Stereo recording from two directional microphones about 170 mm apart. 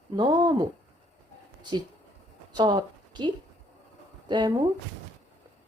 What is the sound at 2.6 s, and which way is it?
A woman's voice, 25° right (ahead or behind).